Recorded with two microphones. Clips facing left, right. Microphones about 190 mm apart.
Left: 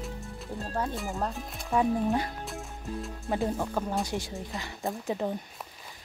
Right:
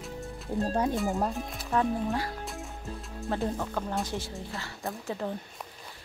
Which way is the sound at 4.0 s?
15° left (ahead or behind).